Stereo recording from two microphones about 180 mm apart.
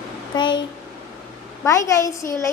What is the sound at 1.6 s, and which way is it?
Speech, 15° left (ahead or behind).